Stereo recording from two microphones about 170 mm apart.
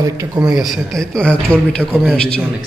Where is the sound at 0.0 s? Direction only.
20° right (ahead or behind).